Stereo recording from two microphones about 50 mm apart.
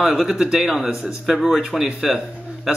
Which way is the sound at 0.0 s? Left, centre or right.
Centre.